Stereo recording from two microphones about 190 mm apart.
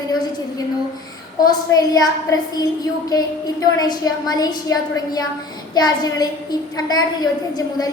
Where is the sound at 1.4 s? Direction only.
20° left (ahead or behind).